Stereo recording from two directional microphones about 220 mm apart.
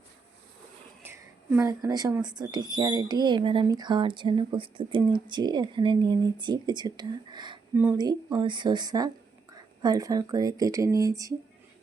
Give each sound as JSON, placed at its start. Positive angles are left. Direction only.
{"t": 1.0, "sound": "a woman's voice", "side_deg": -10}